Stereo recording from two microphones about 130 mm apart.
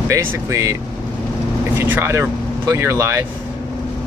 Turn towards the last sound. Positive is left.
turn(degrees=-20)  # may be behind; listen again after turning